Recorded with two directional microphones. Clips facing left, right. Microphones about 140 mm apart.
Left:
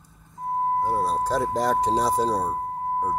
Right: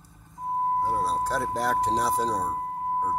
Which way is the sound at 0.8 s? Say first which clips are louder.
Left 2 dB; 10° left (ahead or behind).